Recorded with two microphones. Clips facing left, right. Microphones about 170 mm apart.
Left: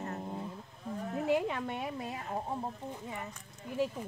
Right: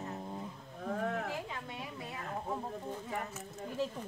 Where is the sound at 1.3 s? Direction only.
65° left (ahead or behind).